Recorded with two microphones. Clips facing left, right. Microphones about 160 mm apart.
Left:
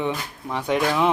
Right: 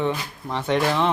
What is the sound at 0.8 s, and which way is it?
Speech, centre (ahead or behind).